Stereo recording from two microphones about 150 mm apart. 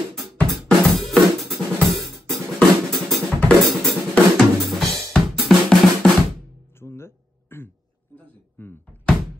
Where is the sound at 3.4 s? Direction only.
5° left (ahead or behind).